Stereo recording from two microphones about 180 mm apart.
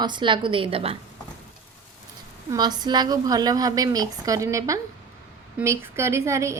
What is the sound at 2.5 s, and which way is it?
A woman's voice, 25° right (ahead or behind).